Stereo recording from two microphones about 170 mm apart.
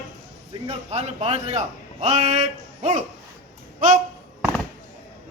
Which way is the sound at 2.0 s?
45° right (ahead or behind).